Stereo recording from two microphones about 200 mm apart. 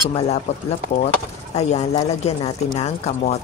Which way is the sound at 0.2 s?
30° left (ahead or behind).